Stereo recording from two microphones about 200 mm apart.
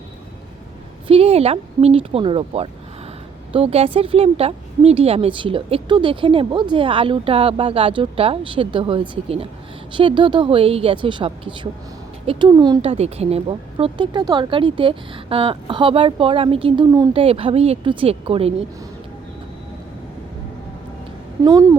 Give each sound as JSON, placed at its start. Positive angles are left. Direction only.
{"t": 1.0, "sound": "speech", "side_deg": -30}
{"t": 21.4, "sound": "a woman's voice", "side_deg": -15}